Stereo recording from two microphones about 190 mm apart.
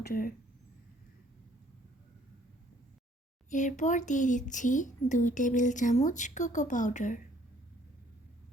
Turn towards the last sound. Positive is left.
turn(degrees=40)  # may be behind; listen again after turning